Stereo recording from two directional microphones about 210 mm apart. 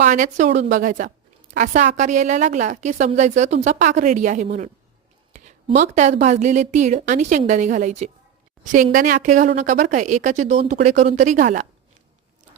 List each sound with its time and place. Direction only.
0.0 s a woman's voice: 35° right (ahead or behind)
5.3 s a sound: 35° right (ahead or behind)
5.6 s a woman's voice: 35° right (ahead or behind)